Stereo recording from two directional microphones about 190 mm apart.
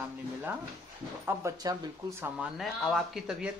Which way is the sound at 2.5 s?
Centre (ahead or behind).